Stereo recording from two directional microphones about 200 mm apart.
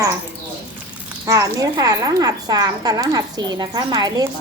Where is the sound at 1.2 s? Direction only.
15° right (ahead or behind).